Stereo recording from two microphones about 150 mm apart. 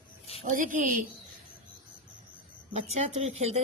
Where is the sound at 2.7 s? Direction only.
45° right (ahead or behind).